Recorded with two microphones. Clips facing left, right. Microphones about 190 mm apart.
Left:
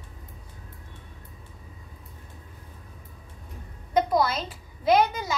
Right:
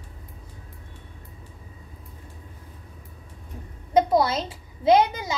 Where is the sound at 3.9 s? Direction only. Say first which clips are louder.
Right 3 dB; 25° right (ahead or behind).